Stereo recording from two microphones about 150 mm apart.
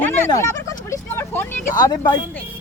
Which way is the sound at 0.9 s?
15° left (ahead or behind).